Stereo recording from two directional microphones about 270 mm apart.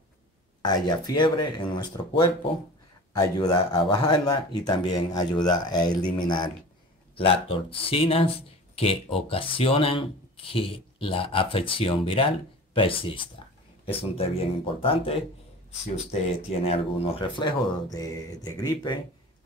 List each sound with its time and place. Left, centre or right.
0.6 s speech: centre